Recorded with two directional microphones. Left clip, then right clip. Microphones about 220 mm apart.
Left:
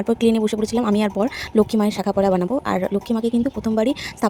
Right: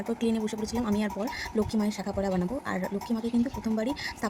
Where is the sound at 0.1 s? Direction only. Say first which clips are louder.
Left 12 dB; 40° left (ahead or behind).